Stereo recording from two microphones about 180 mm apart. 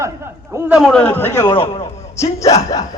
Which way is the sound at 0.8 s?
5° left (ahead or behind).